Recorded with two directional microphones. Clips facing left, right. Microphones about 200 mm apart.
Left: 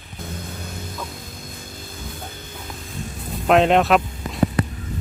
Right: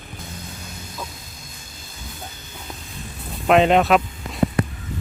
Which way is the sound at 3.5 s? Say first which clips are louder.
Even; centre (ahead or behind).